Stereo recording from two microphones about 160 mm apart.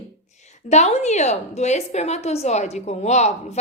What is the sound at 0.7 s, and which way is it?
A woman's voice, 45° left (ahead or behind).